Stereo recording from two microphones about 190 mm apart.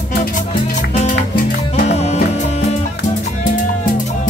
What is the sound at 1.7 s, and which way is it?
Music, 35° left (ahead or behind).